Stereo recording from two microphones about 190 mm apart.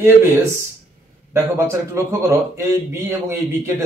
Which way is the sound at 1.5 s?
15° right (ahead or behind).